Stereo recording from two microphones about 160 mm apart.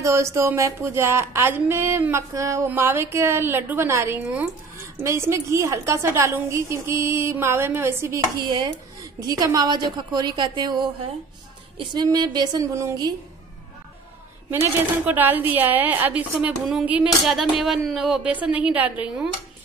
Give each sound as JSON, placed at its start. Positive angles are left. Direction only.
{"t": 0.0, "sound": "speech", "side_deg": -15}
{"t": 8.5, "sound": "a woman's voice", "side_deg": -25}
{"t": 14.5, "sound": "speech", "side_deg": -10}